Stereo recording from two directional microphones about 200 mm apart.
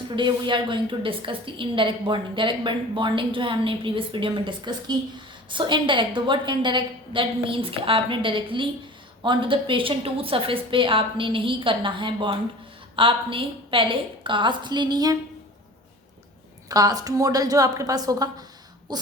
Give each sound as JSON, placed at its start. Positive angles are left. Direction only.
{"t": 0.2, "sound": "a woman's voice", "side_deg": -25}
{"t": 16.6, "sound": "a woman's voice", "side_deg": -15}
{"t": 18.9, "sound": "a sound", "side_deg": -20}